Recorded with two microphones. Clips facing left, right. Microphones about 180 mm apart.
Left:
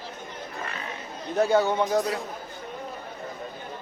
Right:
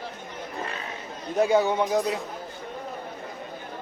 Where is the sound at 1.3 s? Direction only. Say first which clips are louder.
Even; 15° right (ahead or behind).